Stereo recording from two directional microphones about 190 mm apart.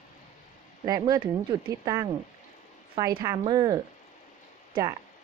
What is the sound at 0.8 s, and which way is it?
Speech, 20° right (ahead or behind).